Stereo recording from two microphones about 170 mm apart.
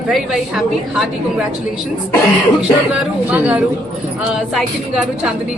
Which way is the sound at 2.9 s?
10° right (ahead or behind).